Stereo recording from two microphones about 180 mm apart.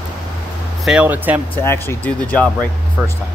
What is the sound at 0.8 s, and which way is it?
Speech, 5° right (ahead or behind).